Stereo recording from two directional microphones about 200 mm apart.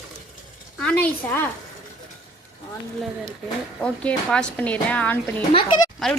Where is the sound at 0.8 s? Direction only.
5° left (ahead or behind).